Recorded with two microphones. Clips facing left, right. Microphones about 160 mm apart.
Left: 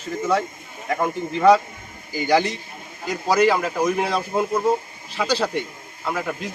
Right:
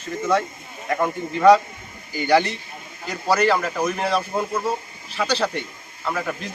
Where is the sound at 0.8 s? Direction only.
10° left (ahead or behind).